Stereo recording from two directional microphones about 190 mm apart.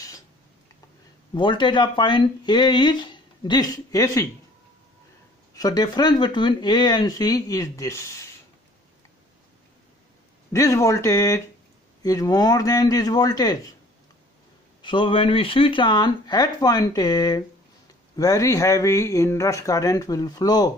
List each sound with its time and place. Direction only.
1.3 s speech: 25° left (ahead or behind)
5.6 s speech: 20° left (ahead or behind)
10.5 s speech: 15° left (ahead or behind)
14.8 s speech: 25° left (ahead or behind)